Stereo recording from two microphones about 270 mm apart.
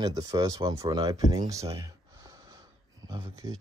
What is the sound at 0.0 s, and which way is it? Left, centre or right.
Speech, centre.